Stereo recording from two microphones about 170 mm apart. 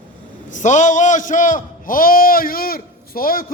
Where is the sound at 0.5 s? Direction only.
45° left (ahead or behind).